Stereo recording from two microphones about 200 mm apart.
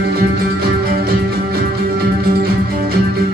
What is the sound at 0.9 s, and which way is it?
Music, 50° right (ahead or behind).